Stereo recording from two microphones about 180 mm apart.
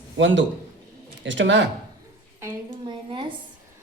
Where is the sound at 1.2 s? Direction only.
90° right.